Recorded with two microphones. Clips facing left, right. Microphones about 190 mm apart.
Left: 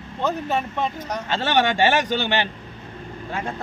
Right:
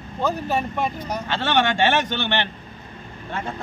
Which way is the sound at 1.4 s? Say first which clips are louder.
Left 1 dB; 5° left (ahead or behind).